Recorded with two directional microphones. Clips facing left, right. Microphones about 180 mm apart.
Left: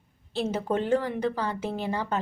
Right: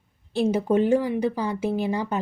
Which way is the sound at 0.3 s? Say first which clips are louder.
Right 6 dB; 10° right (ahead or behind).